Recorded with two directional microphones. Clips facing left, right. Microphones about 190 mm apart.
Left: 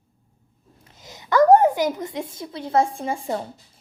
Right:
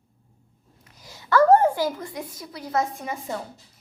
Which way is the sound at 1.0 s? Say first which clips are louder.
Left 1 dB; 20° left (ahead or behind).